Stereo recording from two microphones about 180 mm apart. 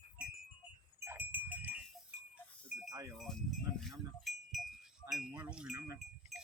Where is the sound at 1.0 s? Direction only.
10° right (ahead or behind).